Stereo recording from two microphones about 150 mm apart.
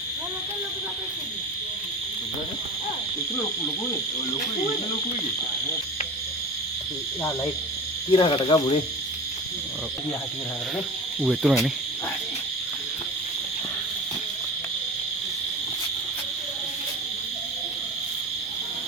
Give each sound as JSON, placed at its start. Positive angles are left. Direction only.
{"t": 8.1, "sound": "cricket", "side_deg": 35}
{"t": 11.2, "sound": "cricket", "side_deg": -5}